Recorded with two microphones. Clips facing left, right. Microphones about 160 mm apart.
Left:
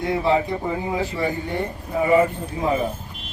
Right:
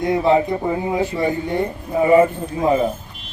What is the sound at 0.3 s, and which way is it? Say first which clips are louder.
Speech: right 4 dB; 25° right (ahead or behind).